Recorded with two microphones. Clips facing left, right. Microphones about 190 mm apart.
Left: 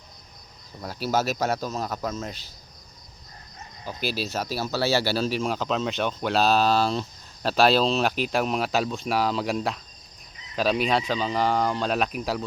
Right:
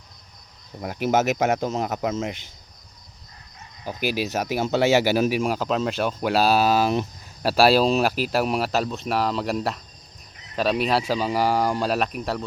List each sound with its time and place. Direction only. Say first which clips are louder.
0.8 s speech: right 4 dB; 15° right (ahead or behind)
3.8 s speech: right 4 dB; 15° right (ahead or behind); by 12.5 s centre (ahead or behind)